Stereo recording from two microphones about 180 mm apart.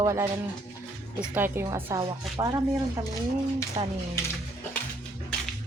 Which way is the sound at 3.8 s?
25° right (ahead or behind).